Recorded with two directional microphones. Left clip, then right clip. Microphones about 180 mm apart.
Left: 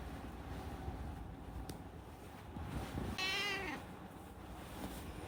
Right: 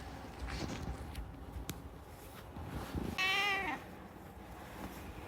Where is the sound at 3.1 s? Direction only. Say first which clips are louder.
Right 6 dB; 20° right (ahead or behind).